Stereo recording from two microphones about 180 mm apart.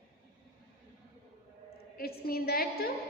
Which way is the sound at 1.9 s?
60° left (ahead or behind).